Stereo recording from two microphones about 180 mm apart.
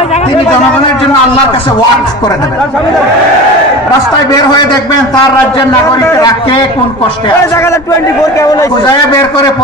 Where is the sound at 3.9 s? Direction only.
20° left (ahead or behind).